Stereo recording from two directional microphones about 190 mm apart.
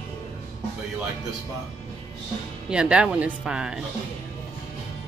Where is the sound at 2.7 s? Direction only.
5° right (ahead or behind).